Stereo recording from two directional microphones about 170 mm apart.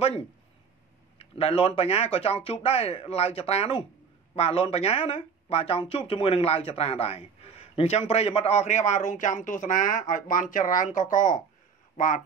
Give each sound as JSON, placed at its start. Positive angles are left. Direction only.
{"t": 1.1, "sound": "speech", "side_deg": 35}